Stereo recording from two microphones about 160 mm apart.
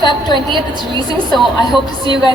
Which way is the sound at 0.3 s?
30° right (ahead or behind).